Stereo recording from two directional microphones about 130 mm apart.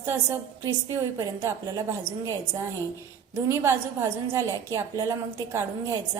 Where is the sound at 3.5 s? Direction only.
20° right (ahead or behind).